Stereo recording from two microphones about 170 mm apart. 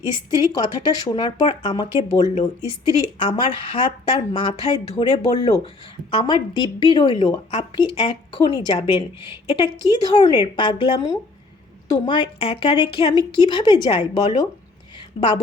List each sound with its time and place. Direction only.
0.1 s a woman's voice: 25° left (ahead or behind)